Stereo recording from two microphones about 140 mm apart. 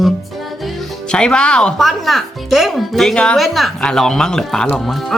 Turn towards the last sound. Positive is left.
turn(degrees=0)  # may be behind; listen again after turning